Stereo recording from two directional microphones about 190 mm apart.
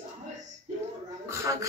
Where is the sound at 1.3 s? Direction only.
15° right (ahead or behind).